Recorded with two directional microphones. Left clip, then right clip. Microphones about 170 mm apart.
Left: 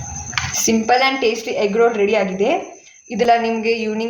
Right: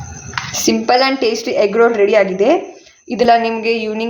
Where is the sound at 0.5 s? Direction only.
35° right (ahead or behind).